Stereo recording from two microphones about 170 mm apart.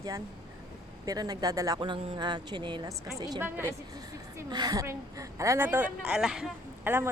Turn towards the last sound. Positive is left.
turn(degrees=-10)  # may be behind; listen again after turning